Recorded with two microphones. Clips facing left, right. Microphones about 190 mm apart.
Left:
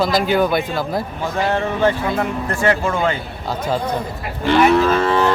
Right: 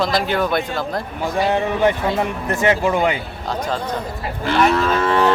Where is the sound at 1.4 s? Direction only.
15° right (ahead or behind).